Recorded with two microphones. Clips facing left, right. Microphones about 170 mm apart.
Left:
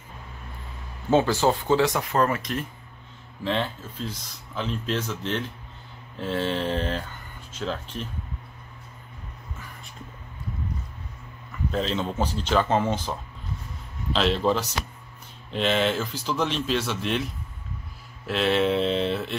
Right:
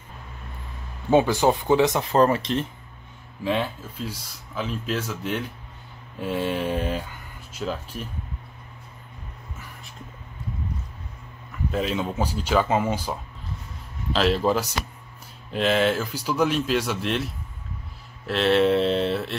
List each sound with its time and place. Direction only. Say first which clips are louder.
1.1 s speech: right 2 dB; 15° right (ahead or behind)
3.4 s speech: right 2 dB; 10° right (ahead or behind)
11.7 s speech: right 1 dB; 10° right (ahead or behind)
14.1 s speech: right 2 dB; 5° right (ahead or behind)